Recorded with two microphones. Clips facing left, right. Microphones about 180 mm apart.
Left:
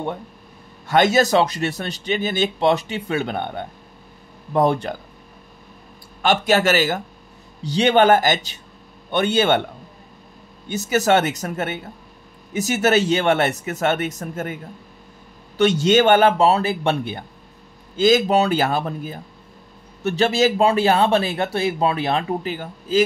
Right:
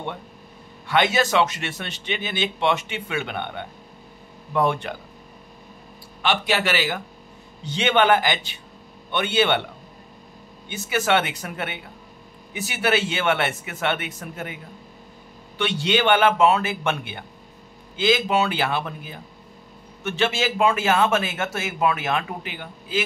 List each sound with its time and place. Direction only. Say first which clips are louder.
0.8 s speech: left 5 dB; 40° left (ahead or behind)
6.2 s a man's voice: left 6 dB; 45° left (ahead or behind)
10.7 s speech: left 4 dB; 40° left (ahead or behind)